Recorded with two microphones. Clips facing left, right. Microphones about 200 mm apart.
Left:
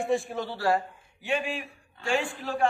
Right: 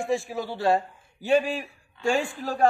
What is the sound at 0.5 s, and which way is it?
Speech, 25° right (ahead or behind).